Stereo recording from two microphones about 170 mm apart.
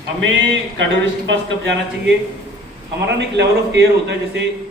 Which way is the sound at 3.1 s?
90° right.